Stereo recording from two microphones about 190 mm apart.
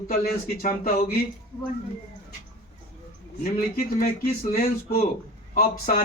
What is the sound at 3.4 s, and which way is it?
A man's voice, 55° left (ahead or behind).